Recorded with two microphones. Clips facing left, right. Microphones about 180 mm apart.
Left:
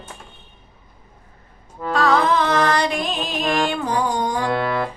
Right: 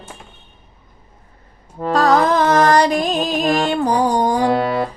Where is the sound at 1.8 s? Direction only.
40° right (ahead or behind).